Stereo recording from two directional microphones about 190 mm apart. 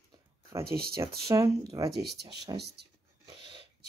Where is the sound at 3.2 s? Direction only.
25° right (ahead or behind).